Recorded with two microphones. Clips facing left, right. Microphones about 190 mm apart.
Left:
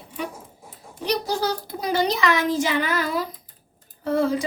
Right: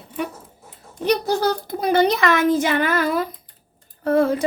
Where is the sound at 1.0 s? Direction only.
55° right (ahead or behind).